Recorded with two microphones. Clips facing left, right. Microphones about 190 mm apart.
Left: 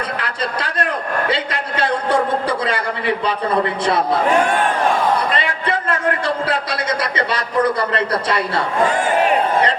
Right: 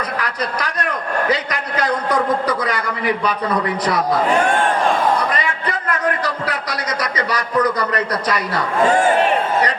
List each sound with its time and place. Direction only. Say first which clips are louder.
1.3 s a man's voice: right 1 dB; 30° left (ahead or behind)
5.3 s a man's voice: left 2 dB; 25° left (ahead or behind)